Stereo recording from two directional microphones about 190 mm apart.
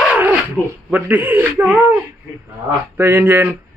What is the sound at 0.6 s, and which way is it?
Speech, 5° left (ahead or behind).